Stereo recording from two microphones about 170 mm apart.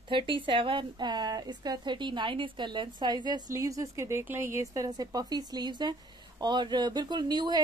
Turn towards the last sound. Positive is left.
turn(degrees=-25)  # may be behind; listen again after turning